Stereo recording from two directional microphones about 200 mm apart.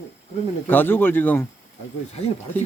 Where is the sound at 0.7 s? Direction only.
10° left (ahead or behind).